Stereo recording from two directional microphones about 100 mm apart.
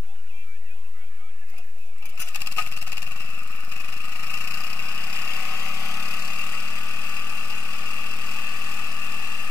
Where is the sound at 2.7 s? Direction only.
20° left (ahead or behind).